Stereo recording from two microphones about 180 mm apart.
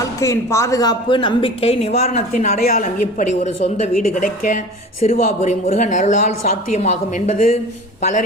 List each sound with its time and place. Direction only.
0.0 s a woman's voice: 15° left (ahead or behind); by 7.6 s 40° left (ahead or behind)